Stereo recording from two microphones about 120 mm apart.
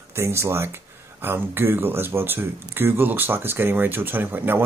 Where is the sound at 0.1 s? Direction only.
20° right (ahead or behind).